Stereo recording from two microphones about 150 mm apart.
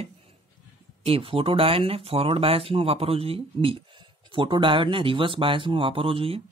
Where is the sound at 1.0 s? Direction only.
40° right (ahead or behind).